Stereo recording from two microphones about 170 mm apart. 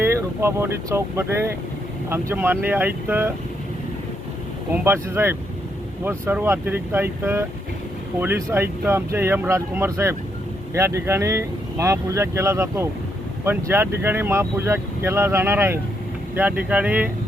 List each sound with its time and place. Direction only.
0.0 s speech: 15° right (ahead or behind)
4.7 s speech: 10° right (ahead or behind)